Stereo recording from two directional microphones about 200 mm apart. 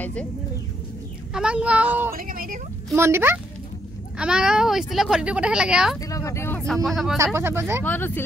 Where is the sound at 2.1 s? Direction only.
45° right (ahead or behind).